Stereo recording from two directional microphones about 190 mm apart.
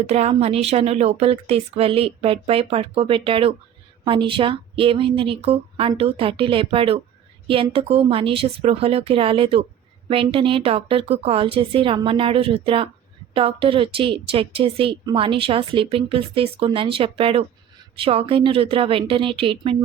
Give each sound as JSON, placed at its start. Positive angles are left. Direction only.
{"t": 0.1, "sound": "a woman's voice", "side_deg": -35}